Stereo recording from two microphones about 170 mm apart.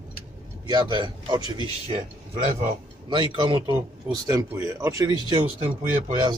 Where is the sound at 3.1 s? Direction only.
25° right (ahead or behind).